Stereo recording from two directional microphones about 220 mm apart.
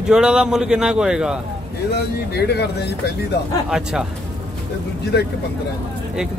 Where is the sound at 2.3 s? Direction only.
50° left (ahead or behind).